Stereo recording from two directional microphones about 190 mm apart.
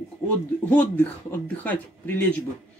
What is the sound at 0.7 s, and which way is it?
Speech, 10° left (ahead or behind).